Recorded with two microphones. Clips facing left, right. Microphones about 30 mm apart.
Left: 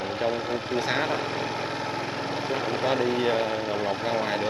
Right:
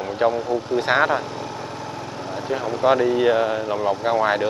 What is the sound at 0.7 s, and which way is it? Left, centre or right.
Speech, right.